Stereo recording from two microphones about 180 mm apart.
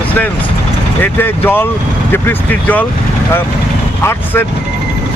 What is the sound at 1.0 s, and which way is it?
Speech, 10° left (ahead or behind).